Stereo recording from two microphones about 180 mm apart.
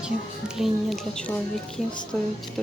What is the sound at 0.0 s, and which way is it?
Speech, 5° right (ahead or behind).